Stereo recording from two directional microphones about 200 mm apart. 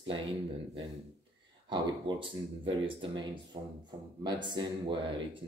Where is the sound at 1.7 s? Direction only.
25° right (ahead or behind).